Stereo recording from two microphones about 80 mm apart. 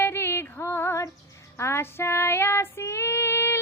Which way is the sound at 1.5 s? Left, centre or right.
Left.